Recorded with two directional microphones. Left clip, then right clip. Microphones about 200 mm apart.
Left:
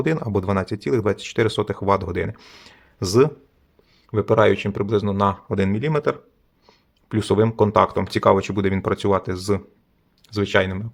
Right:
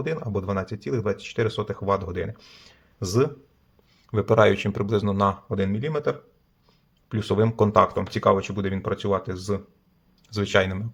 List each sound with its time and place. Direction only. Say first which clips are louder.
0.0 s speech: left 6 dB; 30° left (ahead or behind)
4.1 s speech: left 2 dB; 10° left (ahead or behind)
5.5 s speech: left 4 dB; 25° left (ahead or behind)
10.2 s speech: left 2 dB; 15° left (ahead or behind)